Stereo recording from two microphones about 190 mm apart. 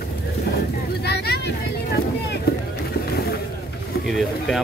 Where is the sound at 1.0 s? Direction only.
60° left (ahead or behind).